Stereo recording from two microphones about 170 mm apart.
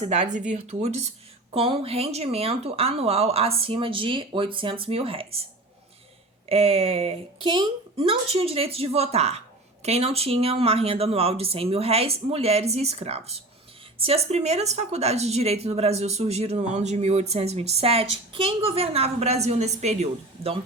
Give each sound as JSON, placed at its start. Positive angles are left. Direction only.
{"t": 0.0, "sound": "speech", "side_deg": -45}
{"t": 6.5, "sound": "speech", "side_deg": -35}